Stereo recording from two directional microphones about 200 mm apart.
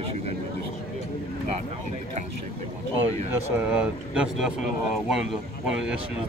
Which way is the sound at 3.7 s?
5° right (ahead or behind).